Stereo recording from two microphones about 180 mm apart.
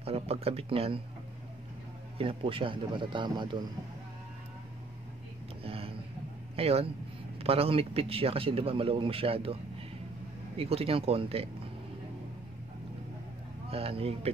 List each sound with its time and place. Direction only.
0.0 s a man's voice: 35° right (ahead or behind)
2.1 s a man's voice: 30° right (ahead or behind)
5.6 s a sound: 30° right (ahead or behind)
6.5 s a man's voice: 35° right (ahead or behind)
10.6 s a man's voice: 35° right (ahead or behind)
13.7 s a man's voice: 30° right (ahead or behind)